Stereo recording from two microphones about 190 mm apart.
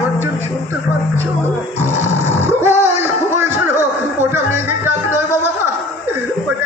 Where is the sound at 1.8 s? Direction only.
15° right (ahead or behind).